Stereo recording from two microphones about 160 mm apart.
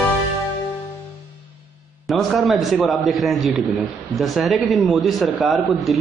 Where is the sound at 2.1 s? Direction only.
Centre (ahead or behind).